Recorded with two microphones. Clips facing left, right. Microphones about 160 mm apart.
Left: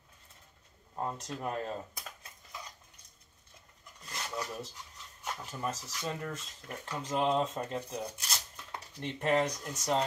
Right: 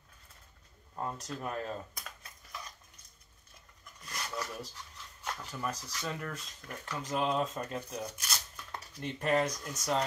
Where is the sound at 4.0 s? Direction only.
25° left (ahead or behind).